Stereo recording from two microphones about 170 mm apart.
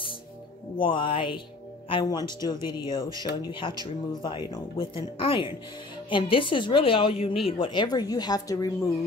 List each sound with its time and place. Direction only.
0.7 s speech: 30° left (ahead or behind)